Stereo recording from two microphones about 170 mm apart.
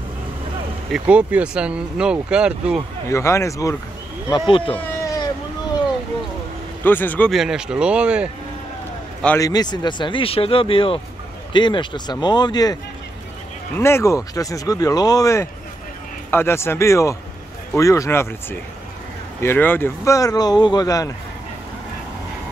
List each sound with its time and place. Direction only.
0.9 s speech: 5° right (ahead or behind)
3.1 s speech: 15° left (ahead or behind)
4.3 s speech: 30° left (ahead or behind)
4.7 s a sound: 20° left (ahead or behind)
6.8 s speech: 10° left (ahead or behind); by 8.3 s 5° right (ahead or behind)
9.4 s speech: 25° left (ahead or behind)
13.7 s speech: 15° left (ahead or behind)